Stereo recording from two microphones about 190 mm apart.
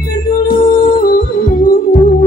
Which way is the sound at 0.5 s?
50° left (ahead or behind).